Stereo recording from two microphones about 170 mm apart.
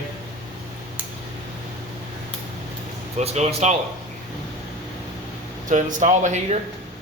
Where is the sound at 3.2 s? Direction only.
40° right (ahead or behind).